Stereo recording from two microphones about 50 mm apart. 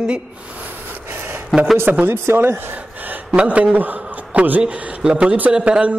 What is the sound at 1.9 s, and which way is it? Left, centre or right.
Speech, right.